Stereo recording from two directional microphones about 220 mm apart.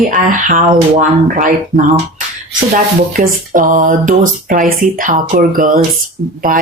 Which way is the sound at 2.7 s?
40° right (ahead or behind).